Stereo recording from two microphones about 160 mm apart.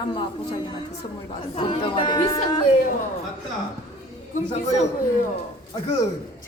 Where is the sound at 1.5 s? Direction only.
35° left (ahead or behind).